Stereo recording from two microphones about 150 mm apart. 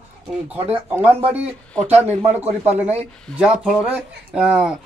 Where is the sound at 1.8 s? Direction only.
45° right (ahead or behind).